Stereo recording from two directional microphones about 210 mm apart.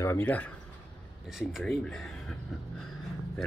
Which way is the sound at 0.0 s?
10° left (ahead or behind).